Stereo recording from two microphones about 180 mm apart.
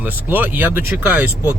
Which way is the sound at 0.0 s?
10° right (ahead or behind).